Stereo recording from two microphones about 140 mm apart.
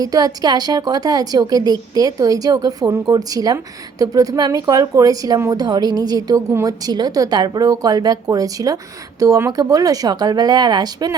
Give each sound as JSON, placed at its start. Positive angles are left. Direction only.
{"t": 0.0, "sound": "a woman's voice", "side_deg": -25}